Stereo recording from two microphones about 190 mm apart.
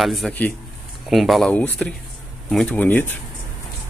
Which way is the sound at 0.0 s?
Centre (ahead or behind).